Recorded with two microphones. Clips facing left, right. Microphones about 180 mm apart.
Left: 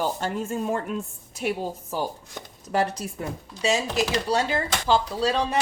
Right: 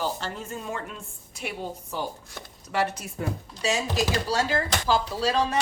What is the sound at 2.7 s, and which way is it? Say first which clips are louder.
Speech: left 2 dB; 40° left (ahead or behind).